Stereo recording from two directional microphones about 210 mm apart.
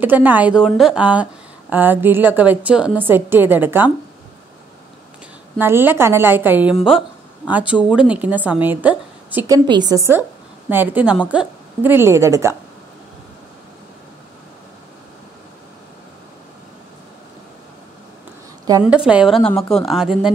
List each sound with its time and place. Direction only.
0.0 s a woman's voice: 10° right (ahead or behind)
5.6 s a woman's voice: 10° right (ahead or behind)
9.7 s a woman's voice: 20° right (ahead or behind)
18.9 s speech: 5° right (ahead or behind)